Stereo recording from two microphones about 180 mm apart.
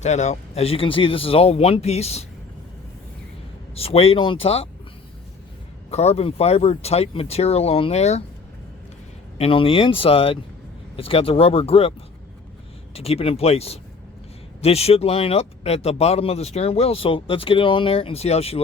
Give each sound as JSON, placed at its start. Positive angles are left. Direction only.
{"t": 0.0, "sound": "speech", "side_deg": 40}
{"t": 3.8, "sound": "speech", "side_deg": 35}
{"t": 5.9, "sound": "speech", "side_deg": 35}
{"t": 9.4, "sound": "speech", "side_deg": 30}